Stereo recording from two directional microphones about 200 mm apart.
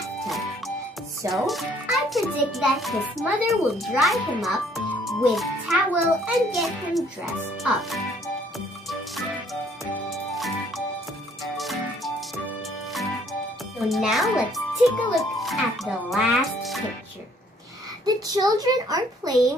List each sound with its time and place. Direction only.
1.3 s a child's voice: centre (ahead or behind)
10.0 s music: centre (ahead or behind)
13.3 s music: centre (ahead or behind)
14.8 s a child's voice: centre (ahead or behind)
18.0 s a child's voice: 20° right (ahead or behind)